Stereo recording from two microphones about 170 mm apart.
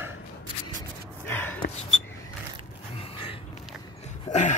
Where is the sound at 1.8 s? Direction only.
40° left (ahead or behind).